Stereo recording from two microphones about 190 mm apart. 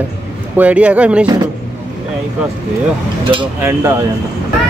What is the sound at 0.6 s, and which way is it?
Speech, 5° right (ahead or behind).